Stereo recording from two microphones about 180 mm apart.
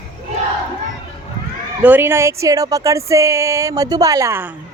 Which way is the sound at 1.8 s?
10° right (ahead or behind).